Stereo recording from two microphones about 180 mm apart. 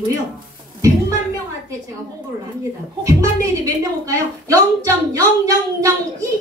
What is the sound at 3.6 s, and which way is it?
A woman's voice, 20° right (ahead or behind).